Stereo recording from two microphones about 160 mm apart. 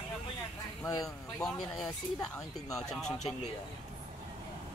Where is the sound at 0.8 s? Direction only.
20° left (ahead or behind).